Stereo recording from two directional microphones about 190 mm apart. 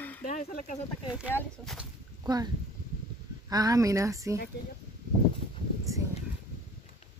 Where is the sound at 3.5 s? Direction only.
20° right (ahead or behind).